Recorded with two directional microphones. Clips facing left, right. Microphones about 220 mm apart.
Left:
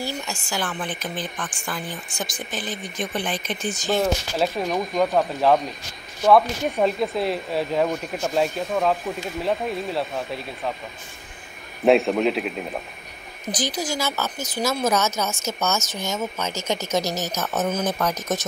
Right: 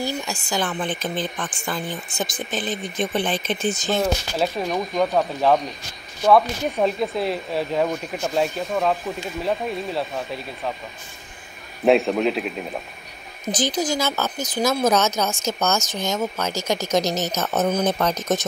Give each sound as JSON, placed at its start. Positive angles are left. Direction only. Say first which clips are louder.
{"t": 0.0, "sound": "speech", "louder": "right 3 dB", "side_deg": -15}
{"t": 3.9, "sound": "speech", "louder": "left 3 dB", "side_deg": 0}
{"t": 11.8, "sound": "speech", "louder": "even", "side_deg": 0}
{"t": 13.5, "sound": "speech", "louder": "right 4 dB", "side_deg": -25}